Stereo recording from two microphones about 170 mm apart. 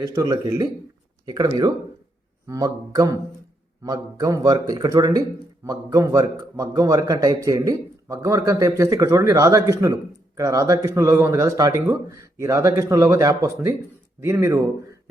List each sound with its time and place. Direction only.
0.0 s a man's voice: 20° right (ahead or behind)